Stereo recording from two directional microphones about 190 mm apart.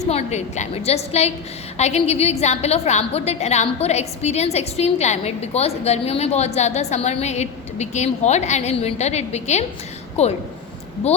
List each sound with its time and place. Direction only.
0.1 s a woman's voice: 35° left (ahead or behind)